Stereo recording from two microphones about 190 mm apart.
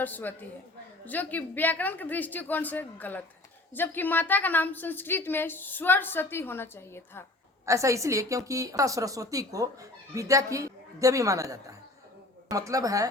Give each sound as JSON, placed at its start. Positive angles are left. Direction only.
{"t": 0.0, "sound": "a woman's voice", "side_deg": 10}
{"t": 7.6, "sound": "speech", "side_deg": -15}